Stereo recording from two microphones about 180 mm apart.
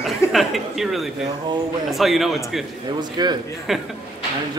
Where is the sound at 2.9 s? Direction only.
25° right (ahead or behind).